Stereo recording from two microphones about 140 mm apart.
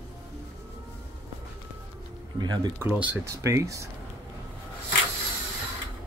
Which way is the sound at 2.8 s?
10° right (ahead or behind).